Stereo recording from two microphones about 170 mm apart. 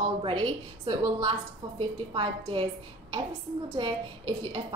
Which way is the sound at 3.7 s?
30° right (ahead or behind).